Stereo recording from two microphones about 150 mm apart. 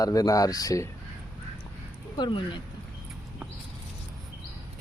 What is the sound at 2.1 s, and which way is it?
Speech, 30° left (ahead or behind).